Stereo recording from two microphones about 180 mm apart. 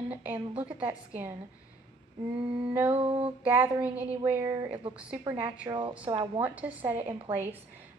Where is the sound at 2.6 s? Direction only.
10° right (ahead or behind).